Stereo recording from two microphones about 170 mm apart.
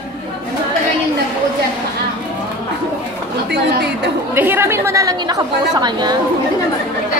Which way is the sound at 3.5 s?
75° right (ahead or behind).